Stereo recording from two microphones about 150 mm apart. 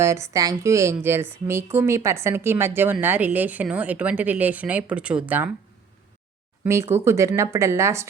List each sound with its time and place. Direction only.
0.0 s speech: 20° right (ahead or behind)
6.7 s speech: 15° right (ahead or behind)